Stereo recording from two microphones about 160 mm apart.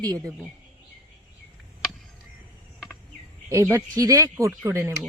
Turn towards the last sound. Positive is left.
turn(degrees=-15)  # may be behind; listen again after turning